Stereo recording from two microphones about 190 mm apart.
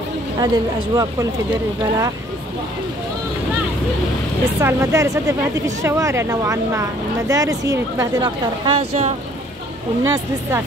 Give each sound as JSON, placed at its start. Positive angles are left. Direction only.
{"t": 0.4, "sound": "speech", "side_deg": -20}
{"t": 4.6, "sound": "speech", "side_deg": -15}
{"t": 10.0, "sound": "speech", "side_deg": -15}